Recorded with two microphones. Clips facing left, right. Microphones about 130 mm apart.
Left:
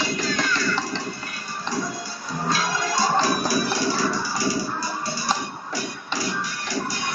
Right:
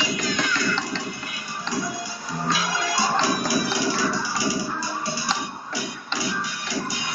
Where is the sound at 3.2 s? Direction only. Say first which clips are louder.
Left 1 dB; 20° right (ahead or behind).